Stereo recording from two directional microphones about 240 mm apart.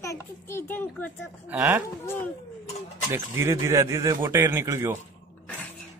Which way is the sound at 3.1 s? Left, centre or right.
Centre.